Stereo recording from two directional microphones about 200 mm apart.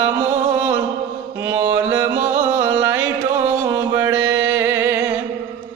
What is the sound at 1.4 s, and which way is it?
Mantra, 15° right (ahead or behind).